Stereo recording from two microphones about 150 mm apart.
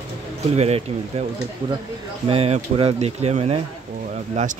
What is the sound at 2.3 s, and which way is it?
Speech, 40° right (ahead or behind).